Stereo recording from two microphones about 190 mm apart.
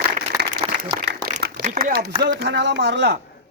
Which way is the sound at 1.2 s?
55° right (ahead or behind).